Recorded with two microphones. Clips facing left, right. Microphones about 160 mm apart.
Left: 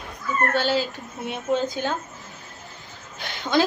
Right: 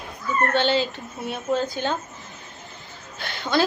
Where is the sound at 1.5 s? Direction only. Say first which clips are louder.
Left 1 dB; 20° left (ahead or behind).